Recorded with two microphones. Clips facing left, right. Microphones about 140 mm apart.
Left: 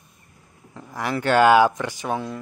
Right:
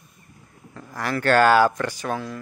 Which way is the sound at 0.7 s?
15° left (ahead or behind).